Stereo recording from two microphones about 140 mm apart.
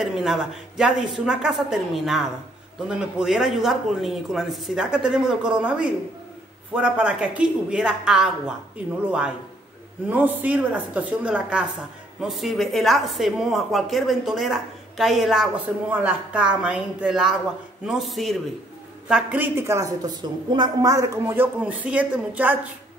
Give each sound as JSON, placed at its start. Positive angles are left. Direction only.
{"t": 0.0, "sound": "a woman's voice", "side_deg": -5}